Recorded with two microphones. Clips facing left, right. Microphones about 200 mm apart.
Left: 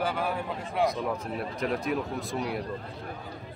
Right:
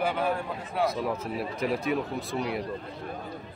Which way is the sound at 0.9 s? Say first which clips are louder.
Right 1 dB; 5° right (ahead or behind).